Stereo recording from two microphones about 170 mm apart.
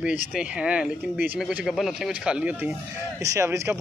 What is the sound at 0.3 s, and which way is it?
Speech, 5° right (ahead or behind).